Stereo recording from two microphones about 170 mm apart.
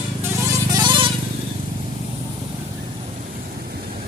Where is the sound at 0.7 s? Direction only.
30° right (ahead or behind).